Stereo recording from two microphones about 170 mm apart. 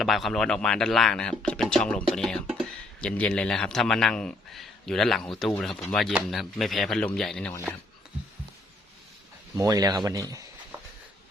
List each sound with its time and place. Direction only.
0.0 s speech: centre (ahead or behind)
9.6 s speech: 20° right (ahead or behind)